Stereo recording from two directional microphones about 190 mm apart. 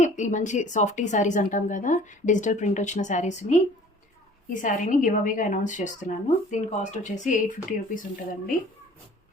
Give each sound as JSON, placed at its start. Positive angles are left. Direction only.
{"t": 0.0, "sound": "a woman's voice", "side_deg": 40}